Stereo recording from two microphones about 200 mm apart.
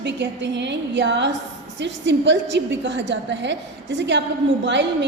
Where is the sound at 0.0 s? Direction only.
60° right (ahead or behind).